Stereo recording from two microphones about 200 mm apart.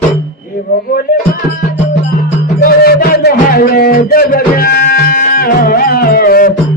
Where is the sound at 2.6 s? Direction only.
50° left (ahead or behind).